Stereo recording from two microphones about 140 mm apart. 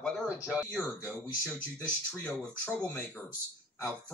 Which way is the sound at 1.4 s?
10° left (ahead or behind).